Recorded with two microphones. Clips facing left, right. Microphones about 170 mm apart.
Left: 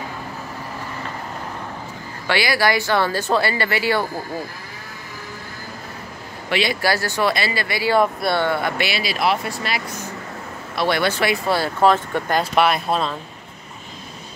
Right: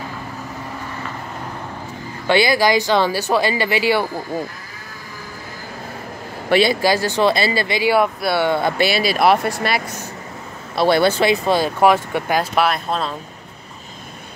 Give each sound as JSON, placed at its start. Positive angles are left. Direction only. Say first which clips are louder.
{"t": 2.2, "sound": "speech", "louder": "right 4 dB", "side_deg": -20}
{"t": 6.7, "sound": "speech", "louder": "right 4 dB", "side_deg": -20}
{"t": 7.9, "sound": "speech", "louder": "left 1 dB", "side_deg": -5}
{"t": 8.5, "sound": "speech", "louder": "right 4 dB", "side_deg": -25}
{"t": 9.0, "sound": "speech", "louder": "right 6 dB", "side_deg": -50}
{"t": 10.8, "sound": "speech", "louder": "right 5 dB", "side_deg": -30}